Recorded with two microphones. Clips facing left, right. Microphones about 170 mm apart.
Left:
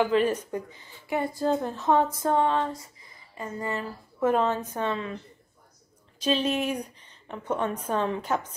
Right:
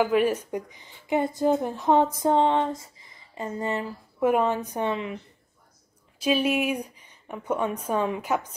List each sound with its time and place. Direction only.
0.0 s speech: 10° right (ahead or behind)